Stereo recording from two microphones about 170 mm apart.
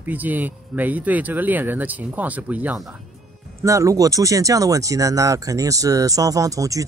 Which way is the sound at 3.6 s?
20° right (ahead or behind).